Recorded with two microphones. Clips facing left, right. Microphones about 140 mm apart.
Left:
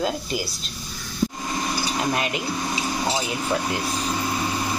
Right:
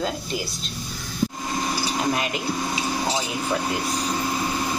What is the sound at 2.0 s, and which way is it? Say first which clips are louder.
Speech: even; centre (ahead or behind).